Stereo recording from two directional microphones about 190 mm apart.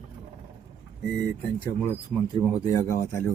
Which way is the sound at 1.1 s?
15° right (ahead or behind).